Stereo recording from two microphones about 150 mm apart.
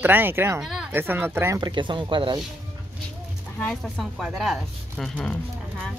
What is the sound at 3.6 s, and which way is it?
Speech, centre (ahead or behind).